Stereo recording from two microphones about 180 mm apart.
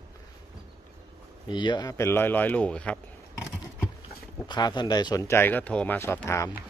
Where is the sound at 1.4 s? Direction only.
25° left (ahead or behind); by 3.0 s 5° left (ahead or behind).